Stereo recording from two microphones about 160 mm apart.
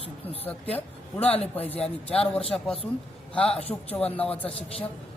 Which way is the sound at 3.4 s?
40° left (ahead or behind).